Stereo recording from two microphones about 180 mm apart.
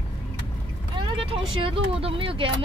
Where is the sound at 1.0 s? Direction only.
30° right (ahead or behind).